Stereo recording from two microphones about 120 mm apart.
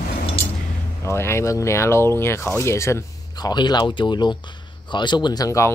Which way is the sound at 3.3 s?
35° left (ahead or behind).